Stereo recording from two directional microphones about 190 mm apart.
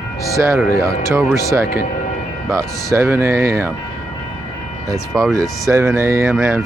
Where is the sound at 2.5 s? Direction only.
15° right (ahead or behind).